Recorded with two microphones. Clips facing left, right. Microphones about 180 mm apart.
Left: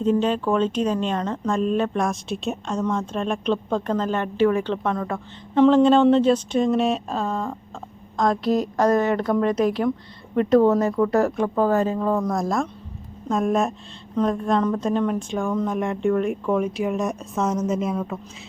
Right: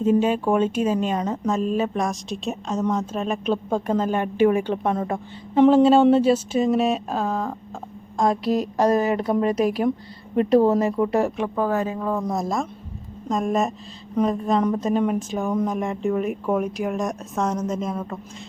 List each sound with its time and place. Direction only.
0.0 s speech: 10° right (ahead or behind)
9.0 s speech: 30° right (ahead or behind)
9.4 s speech: 10° right (ahead or behind)
10.6 s speech: 30° right (ahead or behind)
11.4 s speech: 5° right (ahead or behind)